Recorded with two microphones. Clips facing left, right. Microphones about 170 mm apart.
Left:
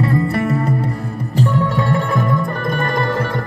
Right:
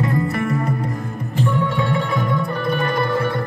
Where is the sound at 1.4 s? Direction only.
45° left (ahead or behind).